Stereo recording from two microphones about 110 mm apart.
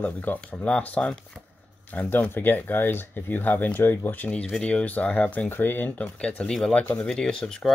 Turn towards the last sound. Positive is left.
turn(degrees=5)  # may be behind; listen again after turning